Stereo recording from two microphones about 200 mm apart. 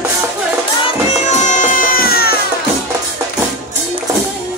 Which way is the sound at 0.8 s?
35° left (ahead or behind).